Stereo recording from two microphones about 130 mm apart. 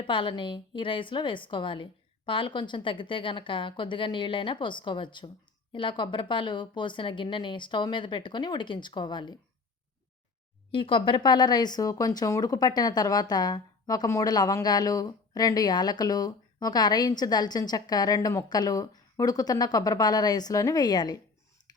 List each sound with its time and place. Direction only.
0.0 s speech: 40° left (ahead or behind)
10.7 s speech: 40° left (ahead or behind)